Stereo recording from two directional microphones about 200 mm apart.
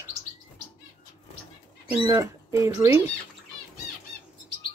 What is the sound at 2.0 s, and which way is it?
Speech, 15° right (ahead or behind).